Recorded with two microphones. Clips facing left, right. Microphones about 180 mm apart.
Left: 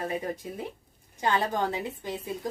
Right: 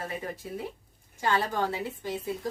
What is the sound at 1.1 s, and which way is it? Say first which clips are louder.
Speech: left 1 dB; 20° left (ahead or behind).